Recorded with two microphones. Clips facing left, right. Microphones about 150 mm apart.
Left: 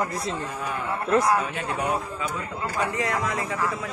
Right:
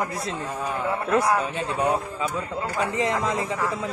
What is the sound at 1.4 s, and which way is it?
Speech, 30° right (ahead or behind).